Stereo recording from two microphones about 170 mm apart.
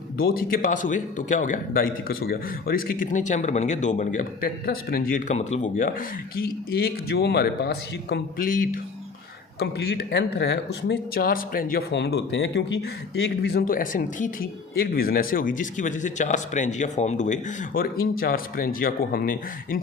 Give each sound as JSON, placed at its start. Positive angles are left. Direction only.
{"t": 0.2, "sound": "a man's voice", "side_deg": 60}
{"t": 6.3, "sound": "speech", "side_deg": 60}
{"t": 9.6, "sound": "speech", "side_deg": 75}
{"t": 13.4, "sound": "speech", "side_deg": 65}